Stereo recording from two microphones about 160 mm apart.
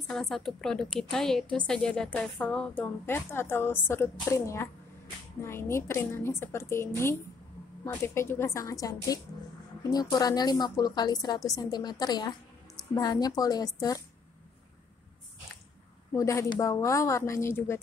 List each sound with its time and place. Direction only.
0.1 s a woman's voice: 5° left (ahead or behind); by 14.0 s 20° left (ahead or behind)
16.2 s a woman's voice: 20° left (ahead or behind)